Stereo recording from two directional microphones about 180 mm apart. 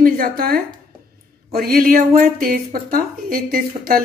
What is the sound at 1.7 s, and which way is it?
A woman's voice, 50° right (ahead or behind).